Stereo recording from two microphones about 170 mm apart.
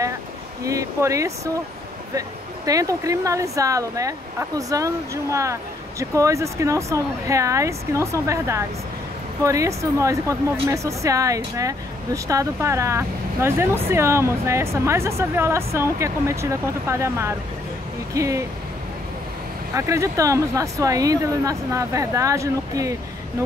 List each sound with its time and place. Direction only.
0.7 s speech: 20° right (ahead or behind)
19.7 s speech: 15° right (ahead or behind)